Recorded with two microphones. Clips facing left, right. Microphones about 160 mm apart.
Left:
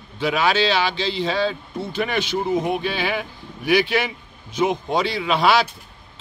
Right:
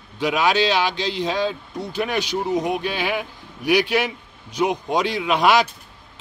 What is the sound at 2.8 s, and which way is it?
A man's voice, 10° right (ahead or behind).